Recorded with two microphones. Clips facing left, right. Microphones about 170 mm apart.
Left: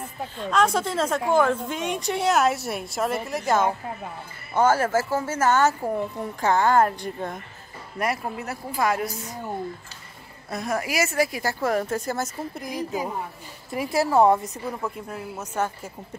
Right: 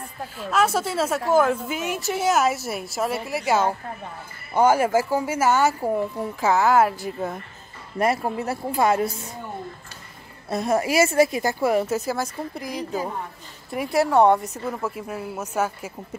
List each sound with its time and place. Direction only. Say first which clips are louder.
0.2 s a woman's voice: even; 5° right (ahead or behind)
8.0 s speech: right 5 dB; 30° right (ahead or behind)
10.5 s speech: right 6 dB; 25° right (ahead or behind)
11.6 s a woman's voice: right 3 dB; 10° right (ahead or behind)